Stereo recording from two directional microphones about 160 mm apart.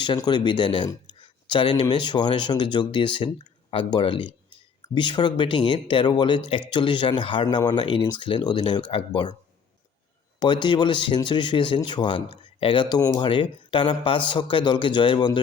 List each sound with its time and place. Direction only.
0.0 s speech: 30° left (ahead or behind)
10.4 s speech: 30° left (ahead or behind)